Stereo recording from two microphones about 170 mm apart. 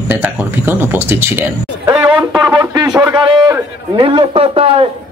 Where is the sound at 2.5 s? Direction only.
20° right (ahead or behind).